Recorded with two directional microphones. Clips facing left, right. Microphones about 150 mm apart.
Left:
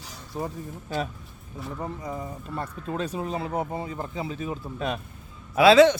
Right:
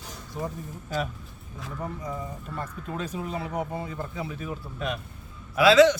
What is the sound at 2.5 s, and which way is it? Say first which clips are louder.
Speech: left 4 dB; 30° left (ahead or behind).